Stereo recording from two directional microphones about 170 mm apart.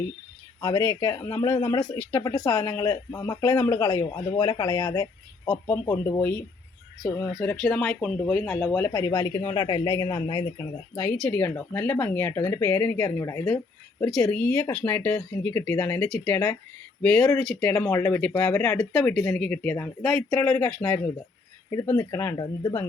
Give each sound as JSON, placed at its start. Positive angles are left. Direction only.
{"t": 0.6, "sound": "speech", "side_deg": 15}
{"t": 2.3, "sound": "speech", "side_deg": 10}
{"t": 3.9, "sound": "speech", "side_deg": 25}
{"t": 7.5, "sound": "speech", "side_deg": 5}
{"t": 10.9, "sound": "speech", "side_deg": 10}